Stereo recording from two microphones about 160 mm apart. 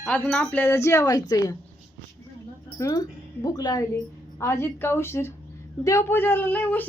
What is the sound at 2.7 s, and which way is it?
A woman's voice, 20° left (ahead or behind).